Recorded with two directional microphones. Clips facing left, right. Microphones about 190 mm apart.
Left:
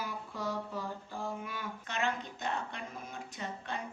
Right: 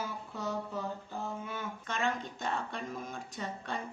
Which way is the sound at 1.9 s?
45° right (ahead or behind).